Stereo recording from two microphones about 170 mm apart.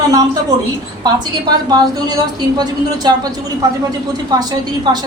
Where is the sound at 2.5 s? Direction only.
25° right (ahead or behind).